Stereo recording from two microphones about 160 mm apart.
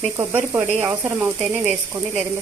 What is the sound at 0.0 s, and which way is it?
Speech, 15° right (ahead or behind).